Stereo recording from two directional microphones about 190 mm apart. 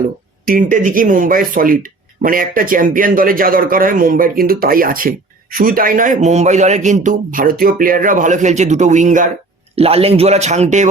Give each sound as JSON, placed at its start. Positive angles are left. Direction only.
{"t": 0.4, "sound": "speech", "side_deg": -45}